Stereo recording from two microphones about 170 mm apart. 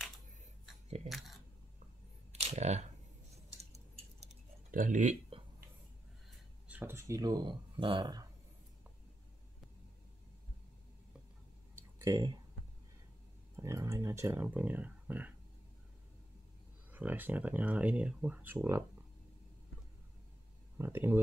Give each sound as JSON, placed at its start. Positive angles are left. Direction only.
{"t": 1.0, "sound": "speech", "side_deg": 0}
{"t": 2.4, "sound": "speech", "side_deg": -40}
{"t": 3.4, "sound": "a sound", "side_deg": -40}
{"t": 4.6, "sound": "speech", "side_deg": -50}
{"t": 5.3, "sound": "a sound", "side_deg": -35}
{"t": 6.7, "sound": "speech", "side_deg": -10}
{"t": 11.7, "sound": "a sound", "side_deg": -20}
{"t": 13.6, "sound": "speech", "side_deg": -20}
{"t": 16.9, "sound": "speech", "side_deg": -10}
{"t": 20.7, "sound": "speech", "side_deg": -15}